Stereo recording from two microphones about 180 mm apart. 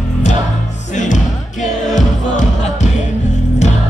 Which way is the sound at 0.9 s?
45° left (ahead or behind).